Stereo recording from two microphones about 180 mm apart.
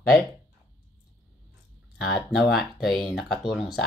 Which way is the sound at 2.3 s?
Centre (ahead or behind).